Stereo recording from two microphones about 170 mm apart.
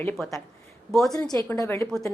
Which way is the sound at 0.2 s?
Centre (ahead or behind).